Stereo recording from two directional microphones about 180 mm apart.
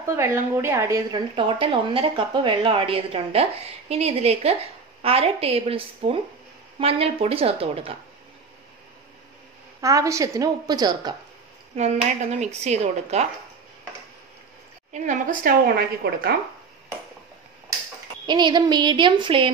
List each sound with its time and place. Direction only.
0.0 s a woman's voice: 15° right (ahead or behind)
1.3 s a woman's voice: 30° right (ahead or behind)
9.8 s a woman's voice: 15° right (ahead or behind)
11.7 s a woman's voice: 40° right (ahead or behind)
14.9 s a woman's voice: 40° right (ahead or behind)
18.2 s a woman's voice: 25° right (ahead or behind)